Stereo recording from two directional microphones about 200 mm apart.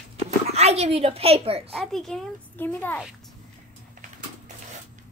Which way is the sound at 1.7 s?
Centre (ahead or behind).